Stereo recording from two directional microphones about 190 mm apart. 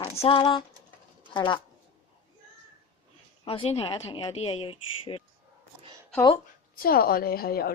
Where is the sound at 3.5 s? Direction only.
30° left (ahead or behind).